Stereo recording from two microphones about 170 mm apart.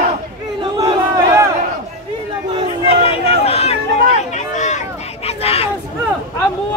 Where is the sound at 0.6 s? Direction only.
25° right (ahead or behind).